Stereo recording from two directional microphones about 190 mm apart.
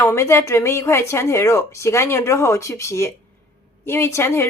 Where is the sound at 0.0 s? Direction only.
15° left (ahead or behind).